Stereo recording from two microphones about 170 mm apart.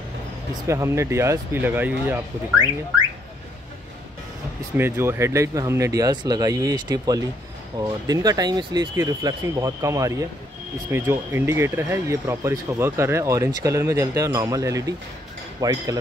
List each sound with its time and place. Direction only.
0.7 s speech: 15° right (ahead or behind)
4.7 s speech: 15° right (ahead or behind)